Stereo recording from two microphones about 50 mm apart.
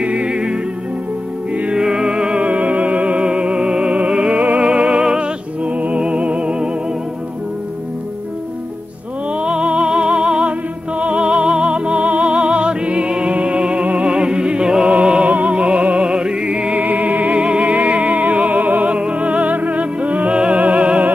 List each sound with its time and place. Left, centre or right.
0.0 s music: right
1.6 s music: centre
9.4 s music: centre